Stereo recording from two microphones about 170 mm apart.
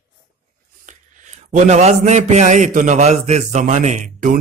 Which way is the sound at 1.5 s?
45° right (ahead or behind).